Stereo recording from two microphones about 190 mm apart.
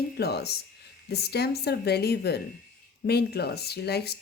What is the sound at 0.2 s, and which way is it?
Speech, 60° left (ahead or behind).